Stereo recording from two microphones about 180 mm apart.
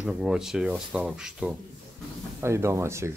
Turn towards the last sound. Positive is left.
turn(degrees=-15)  # may be behind; listen again after turning